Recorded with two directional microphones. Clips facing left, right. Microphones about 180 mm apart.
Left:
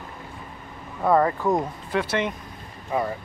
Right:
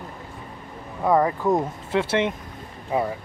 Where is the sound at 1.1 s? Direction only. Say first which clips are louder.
Even; 15° right (ahead or behind).